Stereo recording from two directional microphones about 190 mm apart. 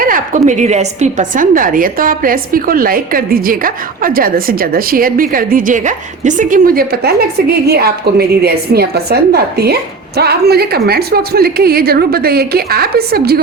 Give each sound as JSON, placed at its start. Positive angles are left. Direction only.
{"t": 0.0, "sound": "a woman's voice", "side_deg": -45}